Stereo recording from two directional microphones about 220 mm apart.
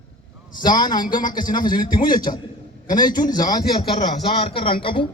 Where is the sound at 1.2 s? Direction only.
40° left (ahead or behind).